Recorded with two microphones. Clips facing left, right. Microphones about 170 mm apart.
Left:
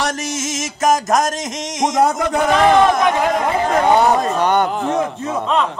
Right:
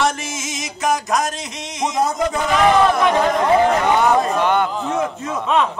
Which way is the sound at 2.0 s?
65° left (ahead or behind).